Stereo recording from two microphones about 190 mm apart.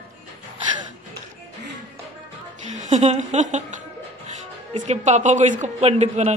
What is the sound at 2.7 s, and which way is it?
Speech, 40° right (ahead or behind).